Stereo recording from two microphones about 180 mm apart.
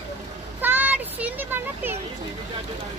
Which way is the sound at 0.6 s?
10° right (ahead or behind).